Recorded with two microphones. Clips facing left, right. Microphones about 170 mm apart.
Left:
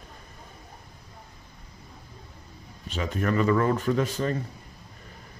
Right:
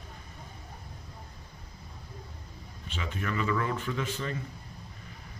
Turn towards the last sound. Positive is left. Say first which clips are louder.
# left 7 dB
turn(degrees=40)  # may be behind; listen again after turning